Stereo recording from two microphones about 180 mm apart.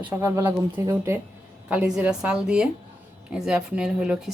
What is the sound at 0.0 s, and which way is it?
A woman's voice, 15° right (ahead or behind).